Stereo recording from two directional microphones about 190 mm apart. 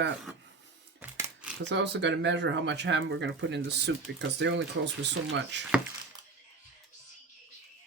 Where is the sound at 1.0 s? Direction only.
10° right (ahead or behind).